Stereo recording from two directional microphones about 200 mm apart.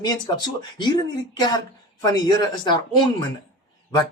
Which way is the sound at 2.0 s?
20° left (ahead or behind).